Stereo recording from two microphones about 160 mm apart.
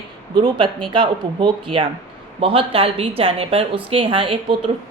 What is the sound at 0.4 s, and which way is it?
A woman's voice, 30° right (ahead or behind).